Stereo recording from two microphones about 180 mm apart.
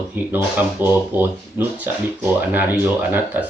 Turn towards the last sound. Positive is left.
turn(degrees=-10)  # may be behind; listen again after turning